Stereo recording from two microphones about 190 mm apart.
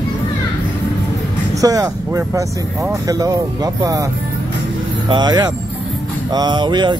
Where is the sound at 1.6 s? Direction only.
20° right (ahead or behind).